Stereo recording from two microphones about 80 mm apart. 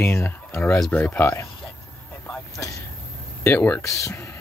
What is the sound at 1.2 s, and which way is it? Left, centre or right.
Speech, left.